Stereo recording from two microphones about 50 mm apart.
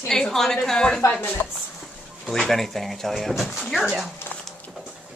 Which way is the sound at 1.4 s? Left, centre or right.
Left.